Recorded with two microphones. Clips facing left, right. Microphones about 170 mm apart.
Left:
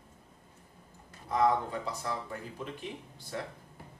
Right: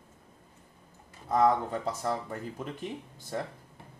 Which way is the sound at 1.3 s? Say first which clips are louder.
Right 3 dB; 45° right (ahead or behind).